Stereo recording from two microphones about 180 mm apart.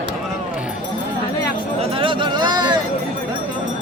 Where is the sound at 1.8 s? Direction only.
30° right (ahead or behind).